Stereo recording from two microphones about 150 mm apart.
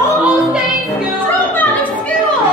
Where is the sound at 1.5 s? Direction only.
10° left (ahead or behind).